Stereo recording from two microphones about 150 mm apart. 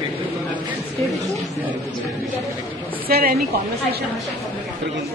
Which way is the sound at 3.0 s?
80° right.